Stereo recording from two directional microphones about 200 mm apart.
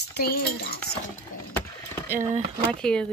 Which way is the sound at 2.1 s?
35° right (ahead or behind).